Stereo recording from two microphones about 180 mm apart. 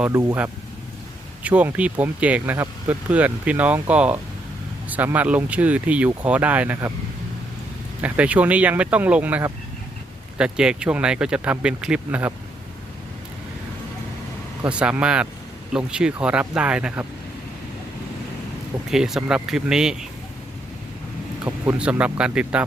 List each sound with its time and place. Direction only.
0.0 s speech: 15° right (ahead or behind)
1.5 s speech: 10° right (ahead or behind)
8.0 s speech: 10° right (ahead or behind)
14.6 s speech: 5° right (ahead or behind)
18.9 s speech: centre (ahead or behind)
21.4 s speech: 5° right (ahead or behind)